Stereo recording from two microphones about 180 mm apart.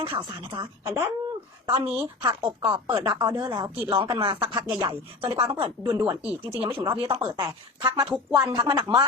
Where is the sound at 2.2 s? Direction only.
25° right (ahead or behind).